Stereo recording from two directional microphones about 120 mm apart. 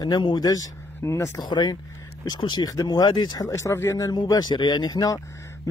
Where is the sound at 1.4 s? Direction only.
35° left (ahead or behind).